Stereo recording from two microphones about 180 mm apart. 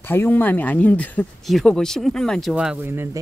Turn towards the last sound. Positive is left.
turn(degrees=-10)  # may be behind; listen again after turning